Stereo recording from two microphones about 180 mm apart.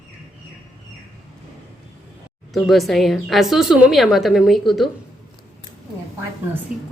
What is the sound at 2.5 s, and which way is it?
Speech, centre (ahead or behind).